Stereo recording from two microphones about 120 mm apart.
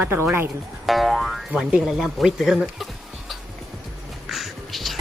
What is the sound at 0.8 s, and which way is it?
Speech, centre (ahead or behind).